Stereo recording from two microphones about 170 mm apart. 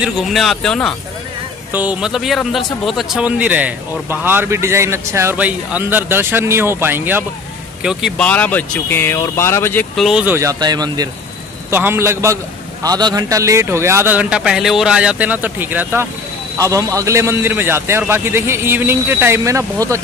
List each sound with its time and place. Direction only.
0.0 s speech: centre (ahead or behind)
1.7 s a man's voice: 10° right (ahead or behind)
8.2 s speech: 10° left (ahead or behind)
9.9 s a man's voice: 5° right (ahead or behind); by 11.1 s 25° right (ahead or behind)
11.7 s a man's voice: 15° right (ahead or behind)